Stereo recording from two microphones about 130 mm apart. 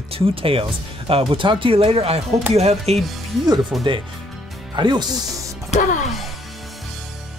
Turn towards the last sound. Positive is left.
turn(degrees=85)